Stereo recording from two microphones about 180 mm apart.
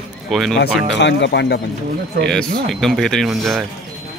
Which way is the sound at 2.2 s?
5° left (ahead or behind).